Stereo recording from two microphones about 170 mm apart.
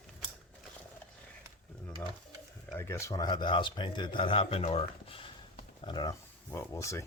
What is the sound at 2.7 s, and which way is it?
Speech, 15° left (ahead or behind).